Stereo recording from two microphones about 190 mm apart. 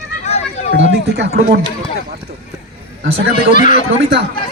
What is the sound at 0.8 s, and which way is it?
Speech, 75° right (ahead or behind).